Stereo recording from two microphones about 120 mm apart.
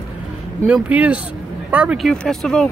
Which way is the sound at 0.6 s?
10° right (ahead or behind).